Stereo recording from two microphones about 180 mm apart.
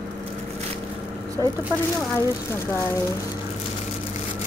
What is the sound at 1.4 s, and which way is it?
Speech, 20° right (ahead or behind).